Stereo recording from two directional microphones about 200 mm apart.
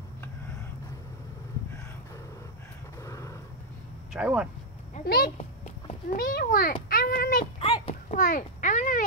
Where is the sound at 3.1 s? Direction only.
15° left (ahead or behind).